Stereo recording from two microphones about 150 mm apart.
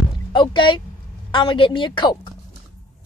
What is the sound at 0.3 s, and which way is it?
A woman's voice, 30° left (ahead or behind).